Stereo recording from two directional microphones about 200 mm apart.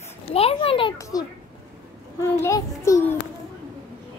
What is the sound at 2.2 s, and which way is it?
Speech, 15° left (ahead or behind).